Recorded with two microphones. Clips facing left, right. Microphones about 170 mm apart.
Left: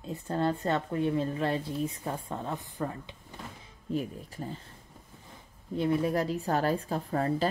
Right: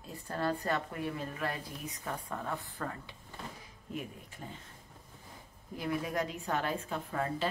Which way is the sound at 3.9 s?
35° left (ahead or behind).